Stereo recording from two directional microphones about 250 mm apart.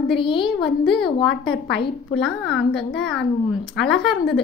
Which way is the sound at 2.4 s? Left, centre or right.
Centre.